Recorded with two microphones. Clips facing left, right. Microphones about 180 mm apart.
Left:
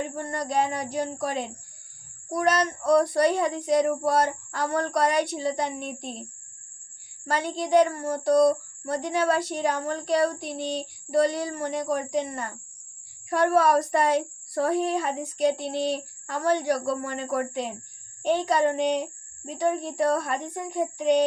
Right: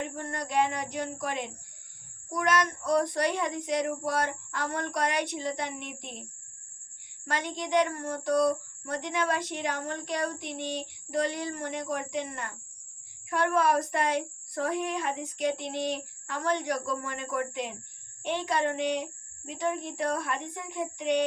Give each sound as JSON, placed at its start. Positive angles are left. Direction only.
{"t": 0.0, "sound": "speech", "side_deg": 35}
{"t": 7.3, "sound": "speech", "side_deg": 35}